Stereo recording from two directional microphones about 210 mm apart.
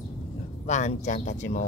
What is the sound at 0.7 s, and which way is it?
Speech, 35° left (ahead or behind).